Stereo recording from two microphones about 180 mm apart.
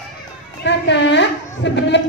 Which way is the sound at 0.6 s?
75° left (ahead or behind).